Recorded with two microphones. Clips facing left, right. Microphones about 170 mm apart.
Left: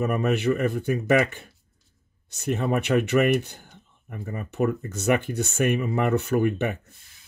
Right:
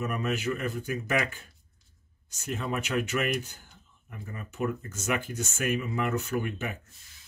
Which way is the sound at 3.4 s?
65° left (ahead or behind).